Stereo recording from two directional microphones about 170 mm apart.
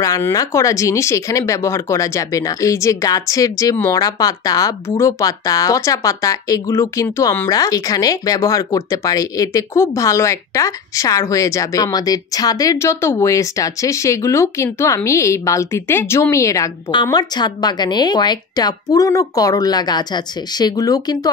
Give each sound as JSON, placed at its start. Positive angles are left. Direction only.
{"t": 0.0, "sound": "speech", "side_deg": 20}